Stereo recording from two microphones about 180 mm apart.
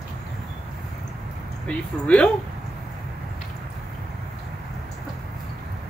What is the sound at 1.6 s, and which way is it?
Speech, 5° left (ahead or behind).